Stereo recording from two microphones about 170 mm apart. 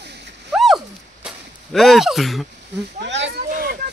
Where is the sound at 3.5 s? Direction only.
60° right (ahead or behind).